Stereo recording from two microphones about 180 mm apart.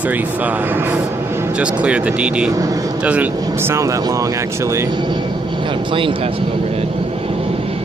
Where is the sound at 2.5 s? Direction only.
20° right (ahead or behind).